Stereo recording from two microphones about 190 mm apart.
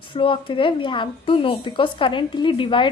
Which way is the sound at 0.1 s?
25° left (ahead or behind).